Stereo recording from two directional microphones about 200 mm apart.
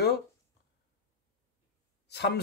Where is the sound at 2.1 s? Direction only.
55° left (ahead or behind).